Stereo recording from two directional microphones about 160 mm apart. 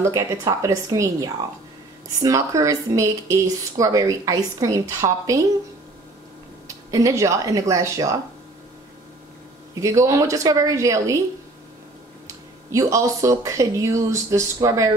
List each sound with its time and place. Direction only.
0.0 s speech: 20° right (ahead or behind)
6.7 s speech: 20° right (ahead or behind)
9.8 s speech: 20° right (ahead or behind)
12.7 s speech: 20° right (ahead or behind)